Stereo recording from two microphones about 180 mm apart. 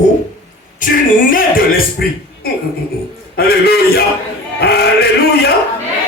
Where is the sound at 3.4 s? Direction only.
60° left (ahead or behind).